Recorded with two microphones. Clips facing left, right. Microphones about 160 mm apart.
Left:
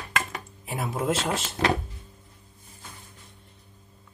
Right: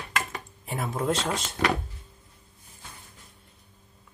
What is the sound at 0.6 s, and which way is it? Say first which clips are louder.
Speech: even; 5° left (ahead or behind).